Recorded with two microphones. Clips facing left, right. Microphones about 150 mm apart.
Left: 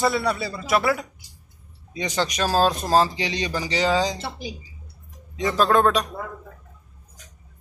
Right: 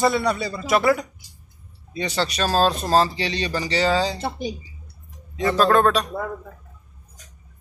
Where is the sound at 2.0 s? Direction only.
15° left (ahead or behind).